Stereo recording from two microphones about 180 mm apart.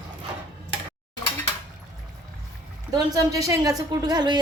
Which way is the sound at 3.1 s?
20° right (ahead or behind).